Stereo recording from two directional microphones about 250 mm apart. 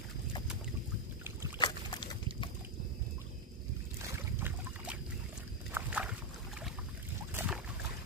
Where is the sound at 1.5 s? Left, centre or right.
Centre.